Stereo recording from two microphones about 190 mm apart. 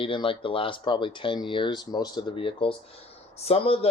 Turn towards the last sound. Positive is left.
turn(degrees=30)  # may be behind; listen again after turning